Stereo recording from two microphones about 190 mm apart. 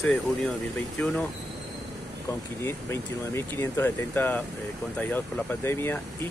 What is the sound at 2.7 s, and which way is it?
Speech, 10° left (ahead or behind).